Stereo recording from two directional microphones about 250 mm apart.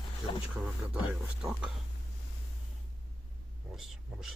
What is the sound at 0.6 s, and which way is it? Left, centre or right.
Speech, centre.